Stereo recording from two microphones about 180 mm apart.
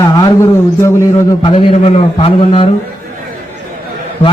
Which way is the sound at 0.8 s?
15° left (ahead or behind).